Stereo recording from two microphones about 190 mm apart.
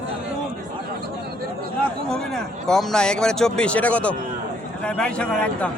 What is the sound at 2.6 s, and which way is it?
Speech, 5° left (ahead or behind).